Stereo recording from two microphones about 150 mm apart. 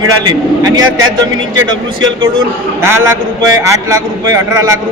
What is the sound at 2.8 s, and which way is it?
A man's voice, 15° right (ahead or behind).